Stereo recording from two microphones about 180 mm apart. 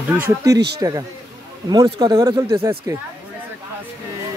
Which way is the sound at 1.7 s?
25° right (ahead or behind).